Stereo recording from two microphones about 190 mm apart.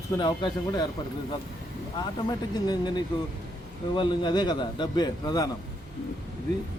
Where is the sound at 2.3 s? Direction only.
20° left (ahead or behind).